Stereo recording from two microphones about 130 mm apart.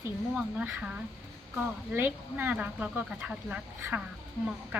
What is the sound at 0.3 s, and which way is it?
Speech, 10° right (ahead or behind).